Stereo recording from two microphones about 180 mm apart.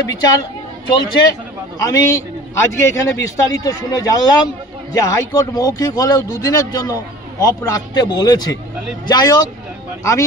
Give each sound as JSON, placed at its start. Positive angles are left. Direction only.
{"t": 0.2, "sound": "a man's voice", "side_deg": 20}